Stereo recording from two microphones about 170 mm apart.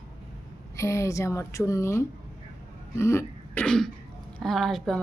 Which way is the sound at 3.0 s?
15° left (ahead or behind).